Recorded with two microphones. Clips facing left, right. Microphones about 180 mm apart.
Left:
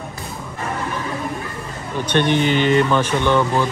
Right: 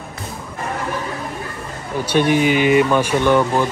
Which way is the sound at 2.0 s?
10° right (ahead or behind).